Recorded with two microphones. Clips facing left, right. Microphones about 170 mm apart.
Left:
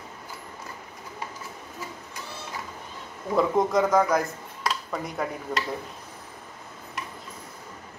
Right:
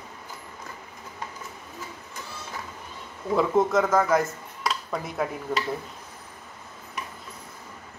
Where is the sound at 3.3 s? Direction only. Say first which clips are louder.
Right 1 dB; centre (ahead or behind).